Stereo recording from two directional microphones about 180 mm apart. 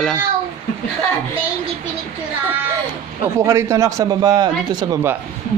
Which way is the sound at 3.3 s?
15° right (ahead or behind).